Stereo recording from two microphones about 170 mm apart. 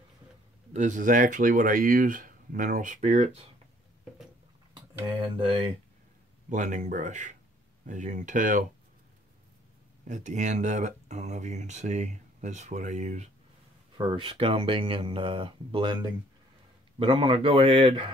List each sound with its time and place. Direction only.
0.7 s speech: 45° right (ahead or behind)
5.0 s speech: 30° right (ahead or behind)
6.5 s speech: 45° right (ahead or behind)
10.0 s speech: 45° right (ahead or behind)
13.9 s speech: 30° right (ahead or behind)